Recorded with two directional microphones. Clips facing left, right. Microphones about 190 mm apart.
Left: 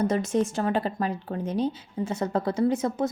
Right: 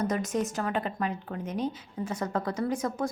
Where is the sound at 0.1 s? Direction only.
30° left (ahead or behind).